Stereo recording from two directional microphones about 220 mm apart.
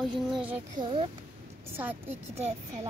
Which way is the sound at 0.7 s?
20° right (ahead or behind).